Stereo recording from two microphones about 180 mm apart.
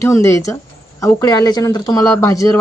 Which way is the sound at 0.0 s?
15° left (ahead or behind).